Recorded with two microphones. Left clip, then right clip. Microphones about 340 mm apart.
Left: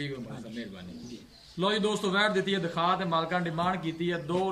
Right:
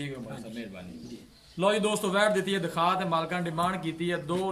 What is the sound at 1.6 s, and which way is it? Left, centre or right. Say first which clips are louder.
A man's voice: right 2 dB; centre.